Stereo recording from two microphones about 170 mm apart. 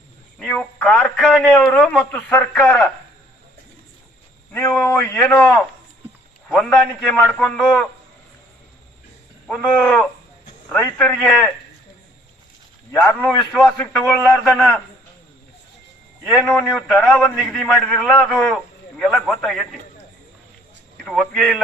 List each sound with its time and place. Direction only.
0.3 s a man's voice: 5° left (ahead or behind)
4.5 s a man's voice: 10° left (ahead or behind)
9.5 s a man's voice: 10° left (ahead or behind)
12.9 s a man's voice: 15° left (ahead or behind)
16.4 s a man's voice: 10° left (ahead or behind)
21.0 s a man's voice: centre (ahead or behind)